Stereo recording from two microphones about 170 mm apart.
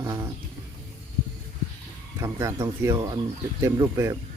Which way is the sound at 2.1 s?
20° right (ahead or behind).